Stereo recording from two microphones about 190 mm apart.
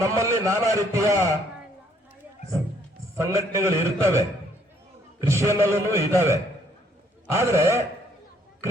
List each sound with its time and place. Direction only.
0.0 s a man's voice: 15° right (ahead or behind)
3.2 s a man's voice: 15° right (ahead or behind)
5.3 s a man's voice: 15° right (ahead or behind)